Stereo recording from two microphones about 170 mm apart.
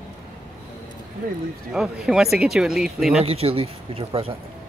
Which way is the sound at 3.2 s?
35° right (ahead or behind).